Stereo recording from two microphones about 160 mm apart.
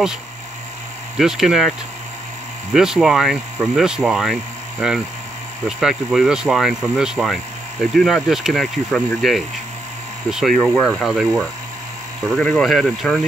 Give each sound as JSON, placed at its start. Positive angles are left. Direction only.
{"t": 1.1, "sound": "speech", "side_deg": -5}
{"t": 2.7, "sound": "speech", "side_deg": 0}